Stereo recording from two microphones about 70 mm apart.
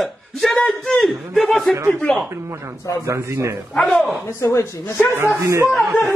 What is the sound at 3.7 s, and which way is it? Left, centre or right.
Speech, centre.